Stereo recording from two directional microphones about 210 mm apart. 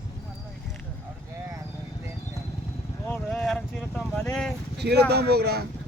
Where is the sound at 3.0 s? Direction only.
5° left (ahead or behind).